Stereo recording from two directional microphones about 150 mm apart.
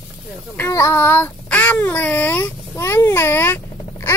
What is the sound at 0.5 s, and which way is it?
Child singing, 20° left (ahead or behind).